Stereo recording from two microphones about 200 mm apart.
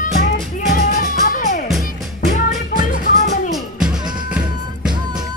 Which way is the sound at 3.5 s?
5° right (ahead or behind).